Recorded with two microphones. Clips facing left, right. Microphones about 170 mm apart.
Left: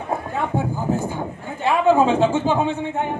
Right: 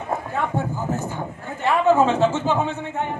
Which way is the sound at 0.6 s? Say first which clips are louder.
Left 3 dB; 15° left (ahead or behind).